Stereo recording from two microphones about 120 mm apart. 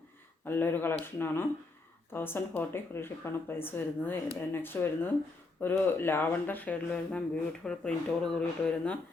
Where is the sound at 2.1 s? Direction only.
20° left (ahead or behind).